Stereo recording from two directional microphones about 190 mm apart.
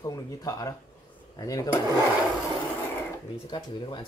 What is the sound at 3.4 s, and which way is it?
Speech, 25° left (ahead or behind).